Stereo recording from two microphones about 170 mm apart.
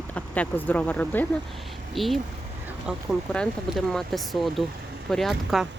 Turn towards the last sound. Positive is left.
turn(degrees=0)  # may be behind; listen again after turning